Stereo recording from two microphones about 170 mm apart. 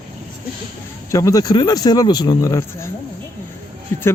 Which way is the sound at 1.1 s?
20° left (ahead or behind).